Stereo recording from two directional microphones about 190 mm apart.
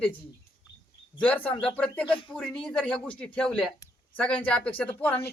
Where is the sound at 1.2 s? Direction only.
10° left (ahead or behind).